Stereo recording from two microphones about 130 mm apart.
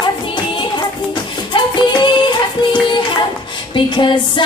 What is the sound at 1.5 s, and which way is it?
Music, 35° left (ahead or behind).